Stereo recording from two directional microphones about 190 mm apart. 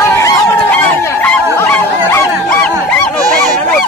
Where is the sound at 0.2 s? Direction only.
15° left (ahead or behind).